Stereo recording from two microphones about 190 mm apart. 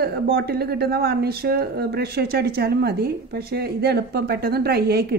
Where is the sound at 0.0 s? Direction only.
55° right (ahead or behind).